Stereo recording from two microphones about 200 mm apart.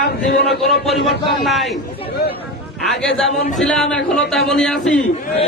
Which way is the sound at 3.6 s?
5° left (ahead or behind).